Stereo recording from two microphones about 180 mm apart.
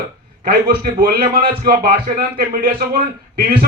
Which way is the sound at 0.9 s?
55° right (ahead or behind).